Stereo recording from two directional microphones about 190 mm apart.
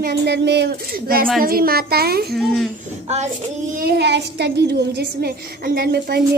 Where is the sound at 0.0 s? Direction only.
60° right (ahead or behind).